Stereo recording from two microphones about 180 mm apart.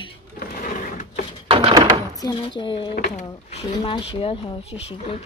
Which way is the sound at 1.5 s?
30° right (ahead or behind).